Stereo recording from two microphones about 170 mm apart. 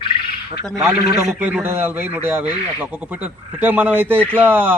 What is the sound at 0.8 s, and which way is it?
Speech, 15° right (ahead or behind).